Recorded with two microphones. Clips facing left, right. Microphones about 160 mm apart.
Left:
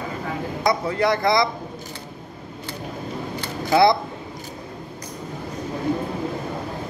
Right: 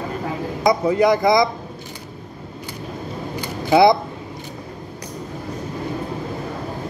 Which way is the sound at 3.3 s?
20° right (ahead or behind).